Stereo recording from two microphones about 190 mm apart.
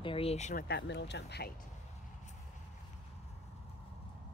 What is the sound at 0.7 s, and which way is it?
Speech, 65° left (ahead or behind).